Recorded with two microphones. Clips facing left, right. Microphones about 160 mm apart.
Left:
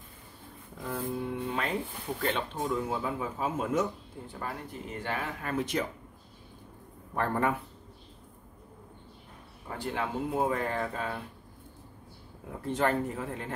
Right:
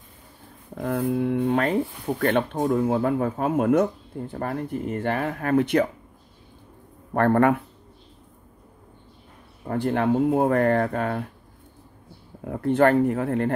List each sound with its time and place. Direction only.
0.7 s speech: 65° right (ahead or behind)
7.2 s speech: 65° right (ahead or behind)
9.7 s speech: 55° right (ahead or behind)
12.4 s speech: 60° right (ahead or behind)